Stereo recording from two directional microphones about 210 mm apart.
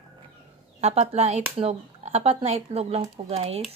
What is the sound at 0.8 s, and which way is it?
A woman's voice, 30° right (ahead or behind).